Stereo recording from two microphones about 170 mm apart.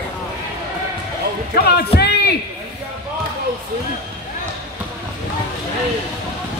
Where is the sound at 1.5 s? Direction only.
70° left (ahead or behind).